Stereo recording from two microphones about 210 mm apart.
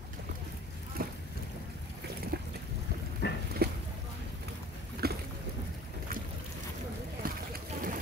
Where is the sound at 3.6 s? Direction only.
50° right (ahead or behind).